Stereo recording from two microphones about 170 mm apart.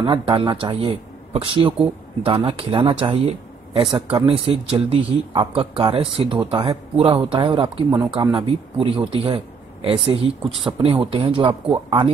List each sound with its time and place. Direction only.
0.0 s speech: 30° right (ahead or behind)